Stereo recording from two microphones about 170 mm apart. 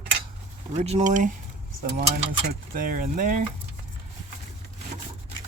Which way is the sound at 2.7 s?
55° right (ahead or behind).